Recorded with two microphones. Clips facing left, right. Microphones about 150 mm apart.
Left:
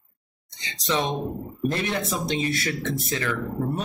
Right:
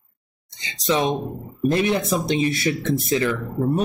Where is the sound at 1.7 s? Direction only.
15° right (ahead or behind).